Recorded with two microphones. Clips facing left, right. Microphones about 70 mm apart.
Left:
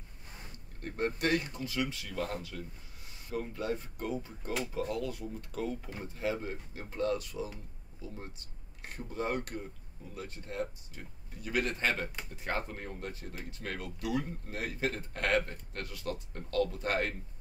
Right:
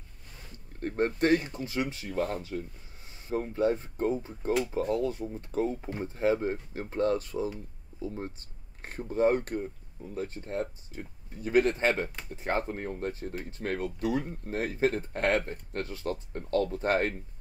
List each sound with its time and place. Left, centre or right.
0.7 s speech: right
13.3 s speech: right
13.6 s speech: right